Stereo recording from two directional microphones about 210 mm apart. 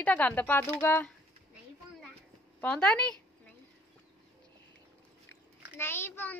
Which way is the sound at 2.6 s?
5° left (ahead or behind).